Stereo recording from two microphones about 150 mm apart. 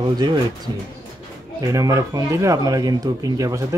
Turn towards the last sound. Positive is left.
turn(degrees=-20)  # may be behind; listen again after turning